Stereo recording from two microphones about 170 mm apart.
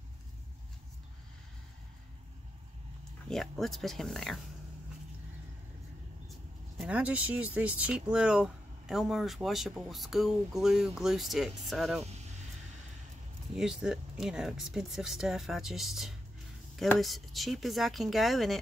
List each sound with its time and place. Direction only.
3.3 s speech: centre (ahead or behind)
6.8 s speech: 10° right (ahead or behind)
12.0 s vehicle: 40° right (ahead or behind)
13.6 s speech: 5° right (ahead or behind)